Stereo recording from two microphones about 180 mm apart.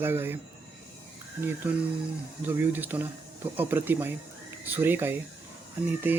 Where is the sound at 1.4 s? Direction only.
10° right (ahead or behind).